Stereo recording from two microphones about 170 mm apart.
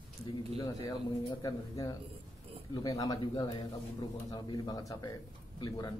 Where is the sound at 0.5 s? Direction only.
25° left (ahead or behind).